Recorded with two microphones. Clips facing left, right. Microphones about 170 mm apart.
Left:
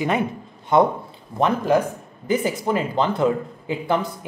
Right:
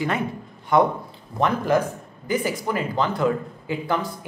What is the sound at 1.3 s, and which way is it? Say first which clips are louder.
Speech: left 2 dB; 20° left (ahead or behind).